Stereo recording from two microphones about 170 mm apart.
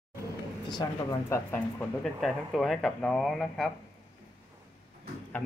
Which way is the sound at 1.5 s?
10° left (ahead or behind).